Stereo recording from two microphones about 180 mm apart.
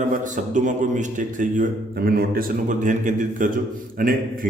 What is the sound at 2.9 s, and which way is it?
Speech, 45° right (ahead or behind).